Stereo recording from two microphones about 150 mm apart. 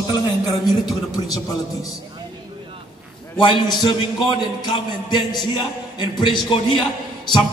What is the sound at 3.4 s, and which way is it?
A man's voice, 30° left (ahead or behind).